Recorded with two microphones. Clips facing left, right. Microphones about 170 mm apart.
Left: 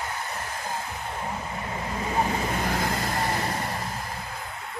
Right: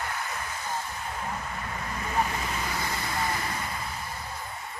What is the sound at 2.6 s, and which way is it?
Vehicle, 60° left (ahead or behind).